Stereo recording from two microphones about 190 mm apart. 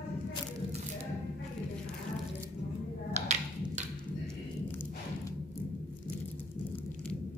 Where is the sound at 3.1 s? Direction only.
35° right (ahead or behind).